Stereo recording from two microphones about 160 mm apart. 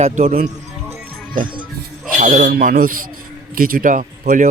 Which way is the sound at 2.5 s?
70° right (ahead or behind).